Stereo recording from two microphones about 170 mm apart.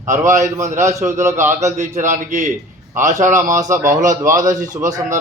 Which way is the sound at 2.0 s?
45° right (ahead or behind).